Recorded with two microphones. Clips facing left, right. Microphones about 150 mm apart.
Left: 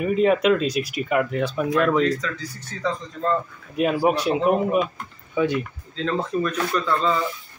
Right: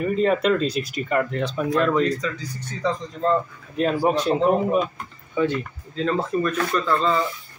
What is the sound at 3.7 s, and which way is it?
Speech, 10° left (ahead or behind).